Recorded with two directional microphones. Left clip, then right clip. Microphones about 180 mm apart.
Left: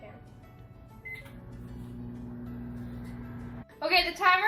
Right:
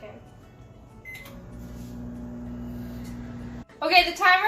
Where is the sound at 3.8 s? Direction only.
5° left (ahead or behind).